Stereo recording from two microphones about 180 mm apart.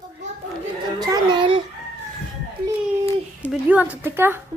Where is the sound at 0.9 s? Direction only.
20° right (ahead or behind).